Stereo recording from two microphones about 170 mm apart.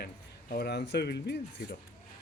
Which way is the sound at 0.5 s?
75° left (ahead or behind).